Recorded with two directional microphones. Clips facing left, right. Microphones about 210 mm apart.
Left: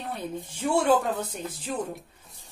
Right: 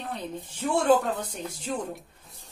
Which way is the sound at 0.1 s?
10° left (ahead or behind).